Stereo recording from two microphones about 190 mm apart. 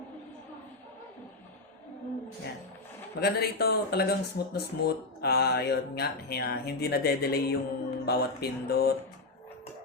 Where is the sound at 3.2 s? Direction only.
55° left (ahead or behind).